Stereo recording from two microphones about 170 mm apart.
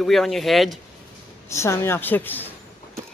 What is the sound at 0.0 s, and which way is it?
Speech, centre (ahead or behind).